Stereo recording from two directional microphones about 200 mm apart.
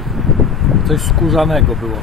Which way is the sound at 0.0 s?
Centre (ahead or behind).